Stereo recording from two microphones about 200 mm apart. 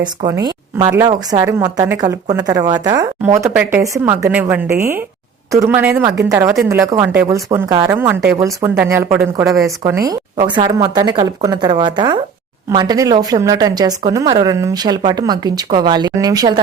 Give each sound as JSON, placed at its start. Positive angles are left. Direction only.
{"t": 0.0, "sound": "a woman's voice", "side_deg": -20}